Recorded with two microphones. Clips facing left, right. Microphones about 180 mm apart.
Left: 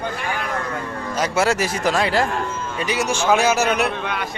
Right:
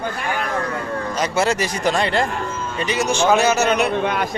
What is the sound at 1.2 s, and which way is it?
A man's voice, 5° left (ahead or behind).